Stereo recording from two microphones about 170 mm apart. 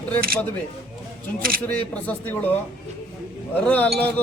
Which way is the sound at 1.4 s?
60° right (ahead or behind).